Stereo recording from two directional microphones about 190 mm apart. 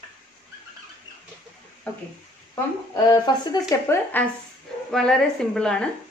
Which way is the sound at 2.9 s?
20° left (ahead or behind).